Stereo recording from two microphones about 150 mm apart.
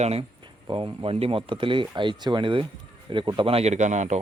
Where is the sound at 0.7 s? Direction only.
35° right (ahead or behind).